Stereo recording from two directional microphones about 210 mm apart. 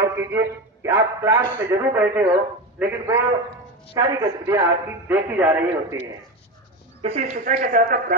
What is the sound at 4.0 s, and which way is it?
A man's voice, 15° right (ahead or behind).